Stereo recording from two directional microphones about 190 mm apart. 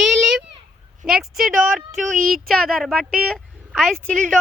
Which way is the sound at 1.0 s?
Centre (ahead or behind).